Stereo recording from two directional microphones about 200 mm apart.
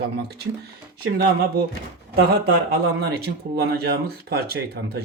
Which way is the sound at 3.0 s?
55° right (ahead or behind).